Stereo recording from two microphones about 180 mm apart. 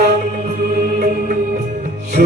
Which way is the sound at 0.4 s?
50° right (ahead or behind).